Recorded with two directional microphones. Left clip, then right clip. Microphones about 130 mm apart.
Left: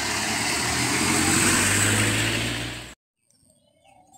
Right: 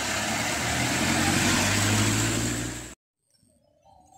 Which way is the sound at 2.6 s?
90° right.